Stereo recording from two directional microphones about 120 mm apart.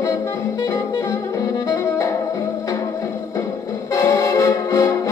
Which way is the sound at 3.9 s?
25° left (ahead or behind).